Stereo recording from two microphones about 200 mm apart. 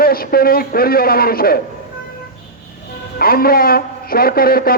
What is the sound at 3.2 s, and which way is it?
A man's voice, 50° left (ahead or behind).